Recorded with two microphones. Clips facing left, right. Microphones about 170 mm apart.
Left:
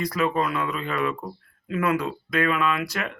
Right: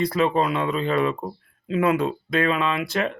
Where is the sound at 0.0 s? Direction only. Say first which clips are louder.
Right 3 dB; 25° right (ahead or behind).